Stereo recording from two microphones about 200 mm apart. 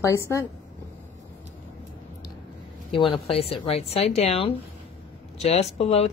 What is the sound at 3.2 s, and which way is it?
Speech, 30° left (ahead or behind).